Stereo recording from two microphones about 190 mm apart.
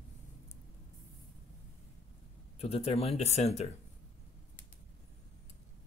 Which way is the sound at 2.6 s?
30° left (ahead or behind).